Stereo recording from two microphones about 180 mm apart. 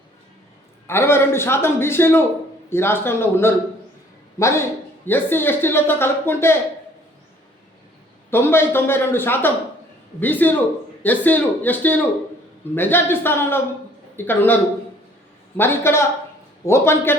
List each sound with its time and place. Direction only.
0.9 s a man's voice: 15° left (ahead or behind)
8.3 s speech: 10° left (ahead or behind)